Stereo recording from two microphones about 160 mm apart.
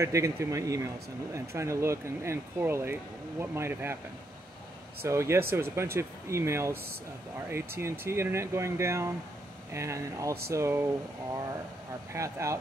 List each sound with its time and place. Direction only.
0.0 s speech: 20° right (ahead or behind)
5.0 s speech: 15° right (ahead or behind)
12.1 s speech: 20° right (ahead or behind)